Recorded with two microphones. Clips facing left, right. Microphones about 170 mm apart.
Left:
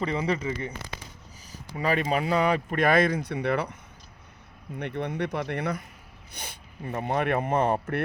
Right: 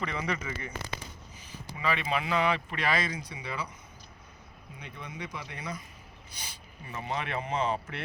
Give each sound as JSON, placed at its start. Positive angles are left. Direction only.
{"t": 0.0, "sound": "speech", "side_deg": 30}
{"t": 1.8, "sound": "speech", "side_deg": 45}
{"t": 4.8, "sound": "speech", "side_deg": 65}